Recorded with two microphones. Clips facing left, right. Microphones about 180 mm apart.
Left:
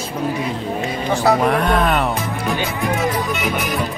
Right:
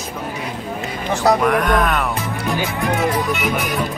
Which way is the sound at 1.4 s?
30° left (ahead or behind).